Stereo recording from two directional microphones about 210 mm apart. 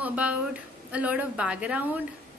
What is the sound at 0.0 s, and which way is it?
A woman's voice, 5° right (ahead or behind).